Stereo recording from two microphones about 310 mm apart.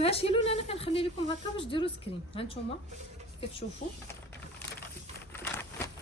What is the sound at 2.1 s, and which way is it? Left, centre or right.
Speech, centre.